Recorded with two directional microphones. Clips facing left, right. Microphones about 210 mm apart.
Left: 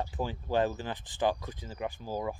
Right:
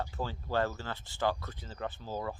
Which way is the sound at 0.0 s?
15° left (ahead or behind).